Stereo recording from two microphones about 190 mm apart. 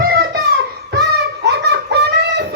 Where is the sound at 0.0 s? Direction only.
55° right (ahead or behind).